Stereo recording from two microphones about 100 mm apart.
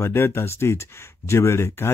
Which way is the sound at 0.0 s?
25° left (ahead or behind).